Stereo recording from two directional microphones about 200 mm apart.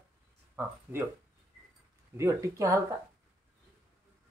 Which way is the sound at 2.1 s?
15° right (ahead or behind).